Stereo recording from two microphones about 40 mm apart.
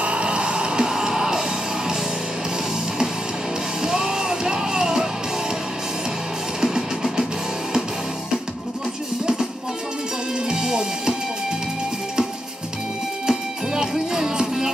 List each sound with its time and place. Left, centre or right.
0.0 s music: right
3.8 s music: centre
6.6 s music: centre
9.2 s music: centre
13.3 s music: centre